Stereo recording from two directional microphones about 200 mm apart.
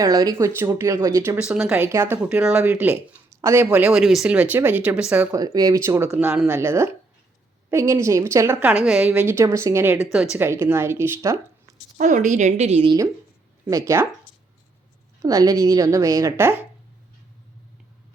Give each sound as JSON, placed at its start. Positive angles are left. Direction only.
{"t": 0.0, "sound": "speech", "side_deg": -20}
{"t": 5.4, "sound": "speech", "side_deg": -20}
{"t": 11.9, "sound": "a woman's voice", "side_deg": -40}
{"t": 13.7, "sound": "speech", "side_deg": -15}
{"t": 15.2, "sound": "speech", "side_deg": -15}